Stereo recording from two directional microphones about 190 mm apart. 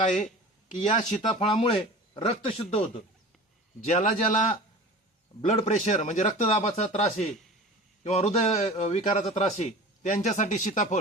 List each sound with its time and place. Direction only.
0.0 s a man's voice: 40° left (ahead or behind)
1.4 s a man's voice: 25° left (ahead or behind)
3.8 s a man's voice: 45° left (ahead or behind)